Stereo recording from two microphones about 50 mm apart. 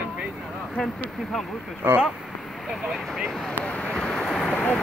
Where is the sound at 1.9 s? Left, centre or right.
Right.